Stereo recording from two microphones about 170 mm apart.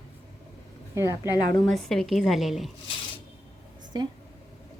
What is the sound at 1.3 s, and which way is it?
Speech, 20° left (ahead or behind).